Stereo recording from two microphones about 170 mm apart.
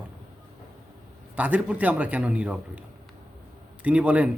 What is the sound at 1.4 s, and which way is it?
Speech, 10° right (ahead or behind).